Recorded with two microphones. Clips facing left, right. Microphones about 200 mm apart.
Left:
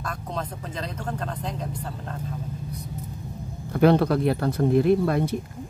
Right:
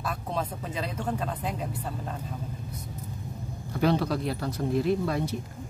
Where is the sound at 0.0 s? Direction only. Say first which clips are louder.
Even; 5° right (ahead or behind).